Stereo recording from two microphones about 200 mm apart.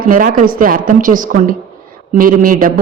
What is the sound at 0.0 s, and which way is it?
A man's voice, 45° right (ahead or behind).